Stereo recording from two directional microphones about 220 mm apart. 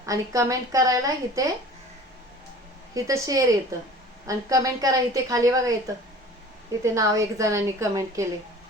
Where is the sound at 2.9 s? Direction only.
15° right (ahead or behind).